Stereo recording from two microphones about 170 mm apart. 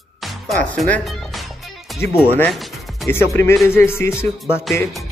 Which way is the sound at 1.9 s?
10° left (ahead or behind).